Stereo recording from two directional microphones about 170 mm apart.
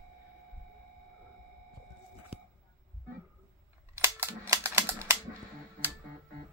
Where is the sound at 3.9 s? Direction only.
15° right (ahead or behind).